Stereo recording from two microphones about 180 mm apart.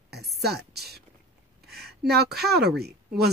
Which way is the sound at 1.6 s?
65° right (ahead or behind).